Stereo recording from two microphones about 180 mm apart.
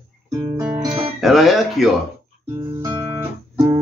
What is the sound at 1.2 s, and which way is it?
Speech, centre (ahead or behind).